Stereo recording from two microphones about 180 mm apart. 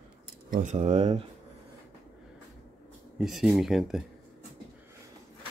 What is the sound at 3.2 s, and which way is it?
Speech, centre (ahead or behind).